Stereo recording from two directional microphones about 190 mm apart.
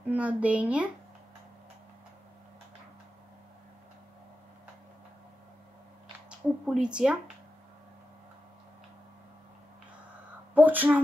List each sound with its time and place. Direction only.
0.1 s speech: 10° right (ahead or behind)
6.2 s speech: 5° right (ahead or behind)
10.5 s speech: 10° right (ahead or behind)